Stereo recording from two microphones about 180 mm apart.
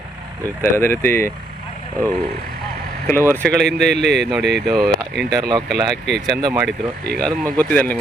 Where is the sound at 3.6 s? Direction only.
70° right (ahead or behind).